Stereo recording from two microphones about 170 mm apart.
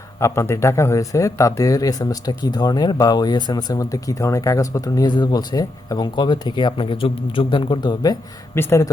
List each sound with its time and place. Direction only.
0.2 s speech: 15° left (ahead or behind)